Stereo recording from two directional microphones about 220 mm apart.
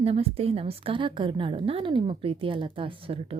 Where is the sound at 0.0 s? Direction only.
25° right (ahead or behind).